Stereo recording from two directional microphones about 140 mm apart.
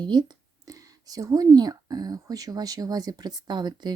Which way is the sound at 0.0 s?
30° right (ahead or behind).